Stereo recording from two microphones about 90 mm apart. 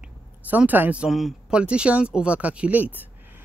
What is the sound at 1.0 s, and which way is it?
Speech, 5° right (ahead or behind).